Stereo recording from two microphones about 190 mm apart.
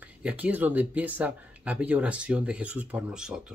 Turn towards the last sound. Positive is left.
turn(degrees=-5)  # may be behind; listen again after turning